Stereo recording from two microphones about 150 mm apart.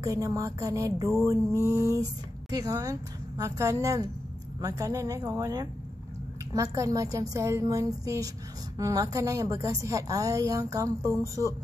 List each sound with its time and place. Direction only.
0.0 s a woman's voice: 20° right (ahead or behind)